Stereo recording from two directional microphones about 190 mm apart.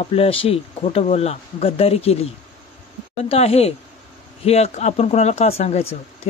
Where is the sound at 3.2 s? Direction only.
30° left (ahead or behind).